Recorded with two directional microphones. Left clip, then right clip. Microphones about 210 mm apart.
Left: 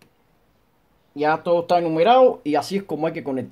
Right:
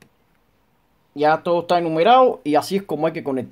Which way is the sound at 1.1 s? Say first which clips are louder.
Right 2 dB; 30° right (ahead or behind).